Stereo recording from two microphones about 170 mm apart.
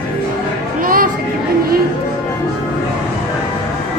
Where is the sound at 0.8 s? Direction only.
55° right (ahead or behind).